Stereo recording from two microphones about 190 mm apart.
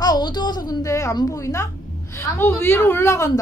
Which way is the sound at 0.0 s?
20° left (ahead or behind).